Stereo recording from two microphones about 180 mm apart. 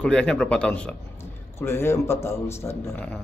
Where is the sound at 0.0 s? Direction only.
5° left (ahead or behind).